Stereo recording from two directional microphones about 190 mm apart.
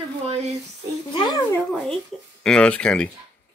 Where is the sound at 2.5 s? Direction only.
5° left (ahead or behind).